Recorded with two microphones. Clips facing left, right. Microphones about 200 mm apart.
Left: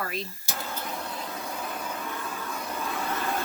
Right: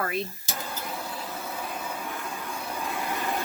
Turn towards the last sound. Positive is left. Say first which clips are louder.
# even
turn(degrees=-15)  # may be behind; listen again after turning